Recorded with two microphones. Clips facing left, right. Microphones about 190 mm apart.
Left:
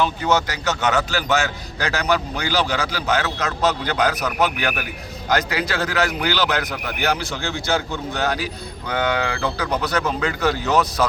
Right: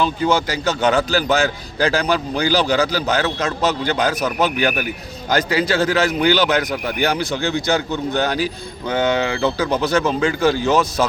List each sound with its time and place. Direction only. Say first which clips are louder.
0.0 s a man's voice: right 2 dB; 30° right (ahead or behind)
8.9 s a man's voice: right 4 dB; 25° right (ahead or behind)